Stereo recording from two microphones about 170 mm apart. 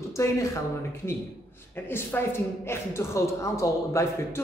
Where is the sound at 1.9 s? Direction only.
15° left (ahead or behind).